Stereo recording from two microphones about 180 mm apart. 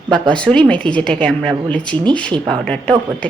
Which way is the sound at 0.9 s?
5° left (ahead or behind).